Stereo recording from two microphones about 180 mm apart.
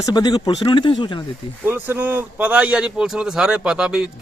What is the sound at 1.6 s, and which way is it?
Speech, 10° right (ahead or behind).